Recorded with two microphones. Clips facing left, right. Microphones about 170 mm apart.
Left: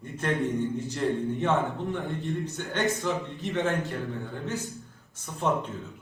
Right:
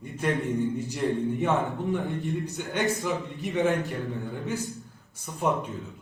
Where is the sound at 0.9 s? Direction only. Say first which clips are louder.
Right 1 dB; 15° right (ahead or behind).